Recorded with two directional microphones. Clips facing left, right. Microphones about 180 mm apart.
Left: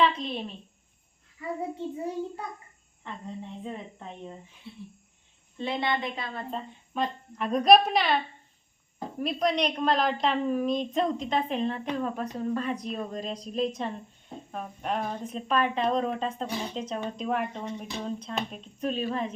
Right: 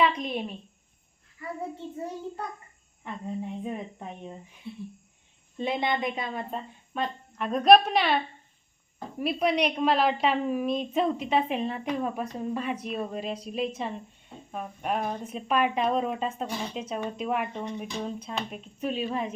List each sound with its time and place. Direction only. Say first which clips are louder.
0.0 s a woman's voice: even; 10° right (ahead or behind)
3.0 s a woman's voice: right 4 dB; 10° right (ahead or behind)
6.5 s a woman's voice: even; centre (ahead or behind)